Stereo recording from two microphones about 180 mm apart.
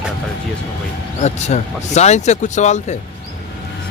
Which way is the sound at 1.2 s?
40° left (ahead or behind).